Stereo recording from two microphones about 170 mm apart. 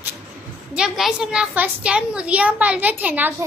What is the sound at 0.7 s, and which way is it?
A woman's voice, 5° right (ahead or behind).